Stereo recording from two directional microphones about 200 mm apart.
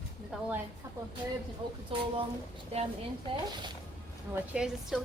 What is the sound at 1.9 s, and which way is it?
Speech, 25° right (ahead or behind).